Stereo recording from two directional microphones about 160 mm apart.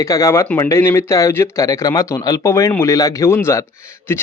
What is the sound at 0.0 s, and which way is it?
Speech, 20° left (ahead or behind).